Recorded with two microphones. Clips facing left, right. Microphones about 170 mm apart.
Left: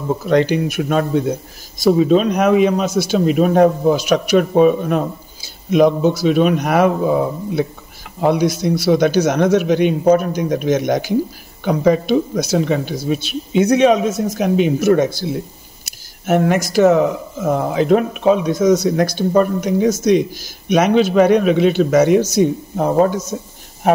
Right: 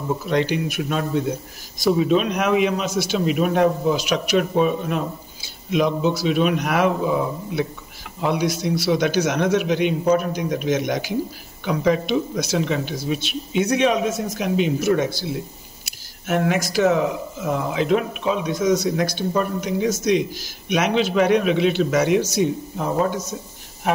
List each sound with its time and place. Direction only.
0.3 s speech: 45° left (ahead or behind)
1.9 s speech: 35° left (ahead or behind)
14.4 s speech: 50° left (ahead or behind)